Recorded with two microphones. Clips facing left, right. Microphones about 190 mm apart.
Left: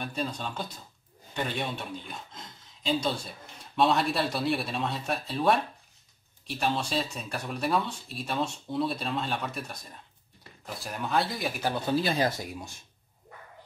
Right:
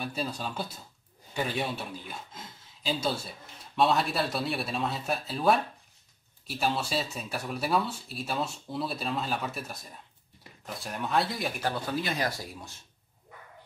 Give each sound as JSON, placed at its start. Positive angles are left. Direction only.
{"t": 0.0, "sound": "speech", "side_deg": -5}
{"t": 11.6, "sound": "speech", "side_deg": 20}